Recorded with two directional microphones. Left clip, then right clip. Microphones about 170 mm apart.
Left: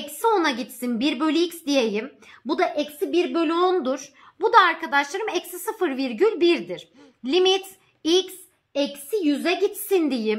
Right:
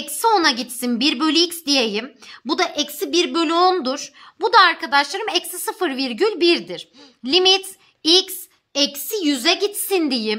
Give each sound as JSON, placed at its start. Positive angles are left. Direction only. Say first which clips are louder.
{"t": 0.2, "sound": "a woman's voice", "louder": "right 5 dB", "side_deg": -30}
{"t": 8.7, "sound": "a woman's voice", "louder": "right 3 dB", "side_deg": -45}
{"t": 9.8, "sound": "a woman's voice", "louder": "right 3 dB", "side_deg": -25}